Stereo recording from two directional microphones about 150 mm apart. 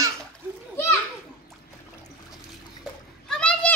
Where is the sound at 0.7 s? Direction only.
15° left (ahead or behind).